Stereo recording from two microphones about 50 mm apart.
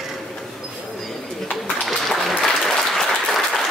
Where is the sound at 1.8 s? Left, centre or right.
Centre.